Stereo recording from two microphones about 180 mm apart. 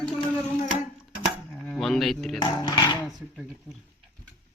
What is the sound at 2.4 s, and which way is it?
Speech, 25° left (ahead or behind).